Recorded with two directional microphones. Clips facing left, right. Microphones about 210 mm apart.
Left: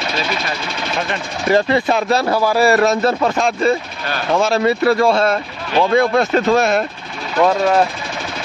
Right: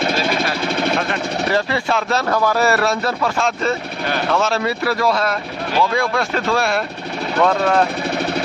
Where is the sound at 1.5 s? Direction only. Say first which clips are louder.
Left 7 dB; 20° left (ahead or behind).